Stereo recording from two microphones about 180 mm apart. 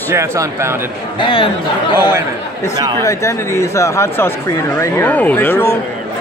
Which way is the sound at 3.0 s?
15° left (ahead or behind).